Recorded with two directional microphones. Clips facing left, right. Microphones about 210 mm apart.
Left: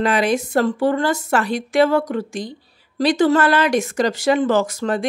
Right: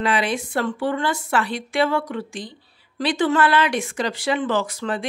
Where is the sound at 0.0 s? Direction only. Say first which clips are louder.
Left 4 dB; 45° left (ahead or behind).